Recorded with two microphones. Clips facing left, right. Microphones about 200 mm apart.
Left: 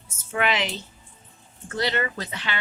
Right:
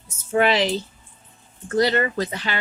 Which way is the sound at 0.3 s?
35° right (ahead or behind).